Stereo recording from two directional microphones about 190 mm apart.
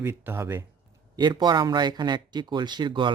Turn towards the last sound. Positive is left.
turn(degrees=-25)  # may be behind; listen again after turning